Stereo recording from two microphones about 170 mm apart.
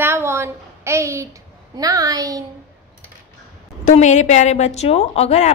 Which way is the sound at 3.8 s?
45° left (ahead or behind).